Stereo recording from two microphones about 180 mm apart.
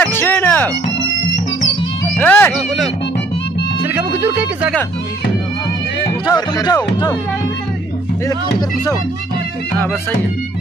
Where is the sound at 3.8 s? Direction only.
10° right (ahead or behind).